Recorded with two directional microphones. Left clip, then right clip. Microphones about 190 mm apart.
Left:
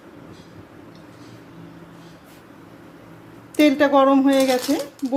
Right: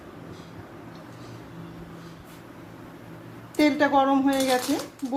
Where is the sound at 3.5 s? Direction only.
25° left (ahead or behind).